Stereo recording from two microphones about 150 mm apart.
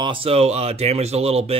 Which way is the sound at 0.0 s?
35° right (ahead or behind).